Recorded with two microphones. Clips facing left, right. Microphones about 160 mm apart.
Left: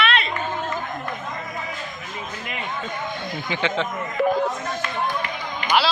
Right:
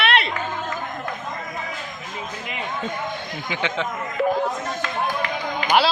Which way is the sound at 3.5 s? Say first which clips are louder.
Left 2 dB; 10° right (ahead or behind).